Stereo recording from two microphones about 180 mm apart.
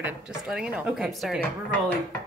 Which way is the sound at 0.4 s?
5° right (ahead or behind).